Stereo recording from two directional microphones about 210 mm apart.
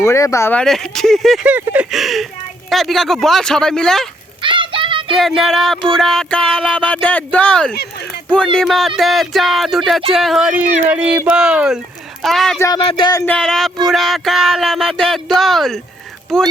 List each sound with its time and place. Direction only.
0.0 s speech: 15° left (ahead or behind)
4.4 s music: 25° right (ahead or behind)
5.1 s speech: centre (ahead or behind)
12.5 s speech: 15° left (ahead or behind)
13.3 s speech: centre (ahead or behind)
15.4 s a sound: centre (ahead or behind)
16.3 s speech: centre (ahead or behind)